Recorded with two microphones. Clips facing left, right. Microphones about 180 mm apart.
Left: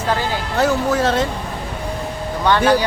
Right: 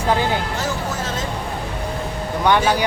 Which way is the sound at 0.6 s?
65° left (ahead or behind).